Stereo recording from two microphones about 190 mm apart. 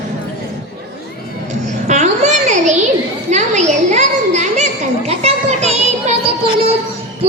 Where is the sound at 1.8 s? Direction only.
40° right (ahead or behind).